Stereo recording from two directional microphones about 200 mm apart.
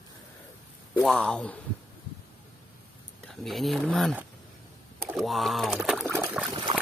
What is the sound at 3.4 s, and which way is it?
Speech, centre (ahead or behind).